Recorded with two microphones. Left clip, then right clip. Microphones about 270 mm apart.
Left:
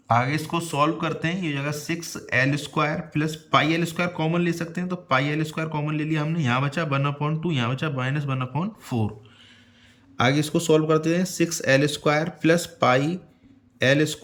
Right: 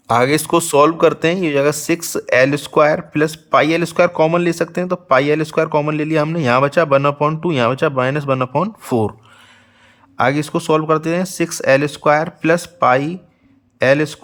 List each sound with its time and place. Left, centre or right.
0.1 s speech: right
10.2 s a man's voice: centre